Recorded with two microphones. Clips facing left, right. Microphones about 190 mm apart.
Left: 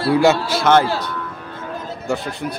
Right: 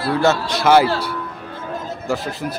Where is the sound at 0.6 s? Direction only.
5° right (ahead or behind).